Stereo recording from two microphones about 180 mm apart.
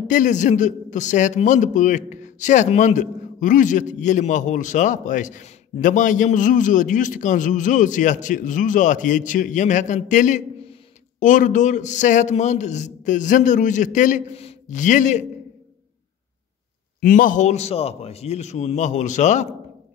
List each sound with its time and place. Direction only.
0.1 s a man's voice: 45° left (ahead or behind)
17.0 s a man's voice: 50° left (ahead or behind)